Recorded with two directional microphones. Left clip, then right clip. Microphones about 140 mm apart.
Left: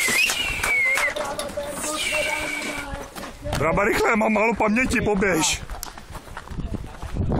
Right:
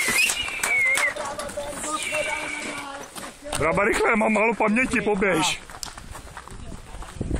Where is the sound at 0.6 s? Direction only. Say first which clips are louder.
Left 1 dB; 35° right (ahead or behind).